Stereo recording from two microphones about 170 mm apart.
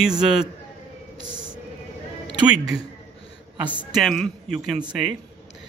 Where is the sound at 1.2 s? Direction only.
25° right (ahead or behind).